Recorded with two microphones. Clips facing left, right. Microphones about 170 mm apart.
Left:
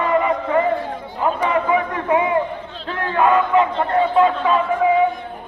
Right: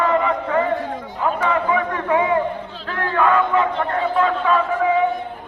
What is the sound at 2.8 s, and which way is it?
Battle cry, 20° left (ahead or behind).